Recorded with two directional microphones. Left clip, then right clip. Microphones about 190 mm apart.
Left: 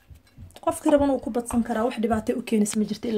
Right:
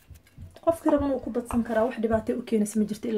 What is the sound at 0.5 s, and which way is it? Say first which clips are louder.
Speech: left 2 dB; 40° left (ahead or behind).